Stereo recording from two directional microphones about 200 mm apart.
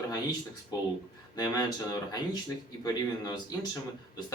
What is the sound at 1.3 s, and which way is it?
Speech, 20° left (ahead or behind).